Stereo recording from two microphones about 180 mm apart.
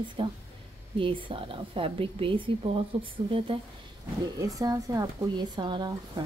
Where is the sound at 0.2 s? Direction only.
30° right (ahead or behind).